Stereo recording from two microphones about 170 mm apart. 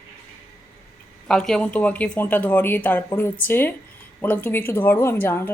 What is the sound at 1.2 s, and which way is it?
A woman's voice, 5° left (ahead or behind).